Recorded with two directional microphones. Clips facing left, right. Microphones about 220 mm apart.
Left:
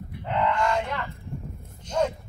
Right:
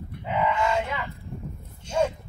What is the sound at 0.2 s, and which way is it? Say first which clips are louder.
Honk: even; 5° right (ahead or behind).